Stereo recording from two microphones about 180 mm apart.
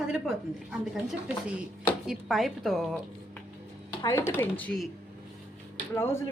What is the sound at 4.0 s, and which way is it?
Speech, 15° left (ahead or behind).